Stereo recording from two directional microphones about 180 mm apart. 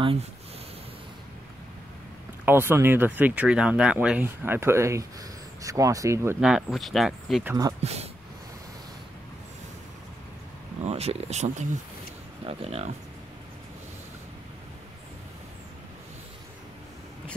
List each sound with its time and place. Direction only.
0.0 s speech: 30° right (ahead or behind)
2.4 s speech: 10° right (ahead or behind)
6.4 s speech: centre (ahead or behind)
7.4 s speech: 20° right (ahead or behind)
7.8 s speech: 35° right (ahead or behind)
10.9 s speech: 35° right (ahead or behind)